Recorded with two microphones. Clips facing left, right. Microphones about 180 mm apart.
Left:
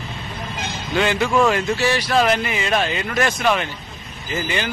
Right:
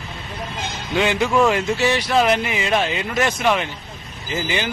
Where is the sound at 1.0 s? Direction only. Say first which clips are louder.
Even; 10° right (ahead or behind).